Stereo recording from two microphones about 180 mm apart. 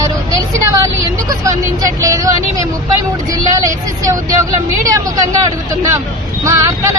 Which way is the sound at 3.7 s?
15° right (ahead or behind).